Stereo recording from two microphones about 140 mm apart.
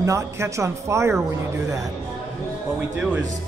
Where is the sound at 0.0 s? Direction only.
20° right (ahead or behind).